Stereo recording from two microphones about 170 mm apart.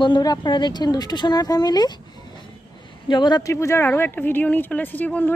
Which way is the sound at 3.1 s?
25° left (ahead or behind).